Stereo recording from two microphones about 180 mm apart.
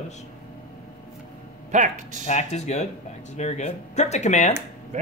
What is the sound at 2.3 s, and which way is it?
Speech, 40° left (ahead or behind).